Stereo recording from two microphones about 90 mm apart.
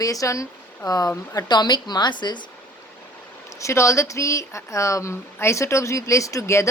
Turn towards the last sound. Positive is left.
turn(degrees=35)  # may be behind; listen again after turning